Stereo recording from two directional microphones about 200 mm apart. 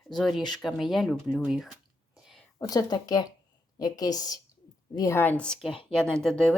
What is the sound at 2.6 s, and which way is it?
A woman's voice, 20° left (ahead or behind).